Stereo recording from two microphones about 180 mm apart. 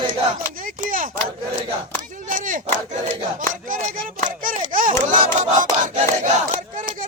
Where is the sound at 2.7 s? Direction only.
45° right (ahead or behind).